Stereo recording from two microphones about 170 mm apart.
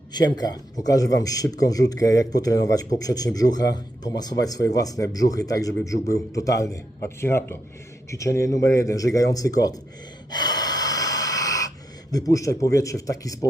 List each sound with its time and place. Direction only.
0.1 s a man's voice: 25° left (ahead or behind)
10.2 s gasp: 25° left (ahead or behind)
12.1 s a man's voice: 20° left (ahead or behind)